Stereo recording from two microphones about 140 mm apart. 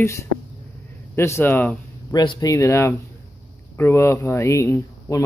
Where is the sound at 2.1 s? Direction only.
30° left (ahead or behind).